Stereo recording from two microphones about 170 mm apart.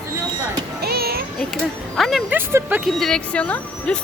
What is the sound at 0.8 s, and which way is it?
Music, 65° right (ahead or behind).